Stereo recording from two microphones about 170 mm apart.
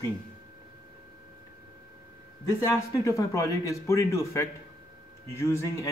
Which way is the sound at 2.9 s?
20° left (ahead or behind).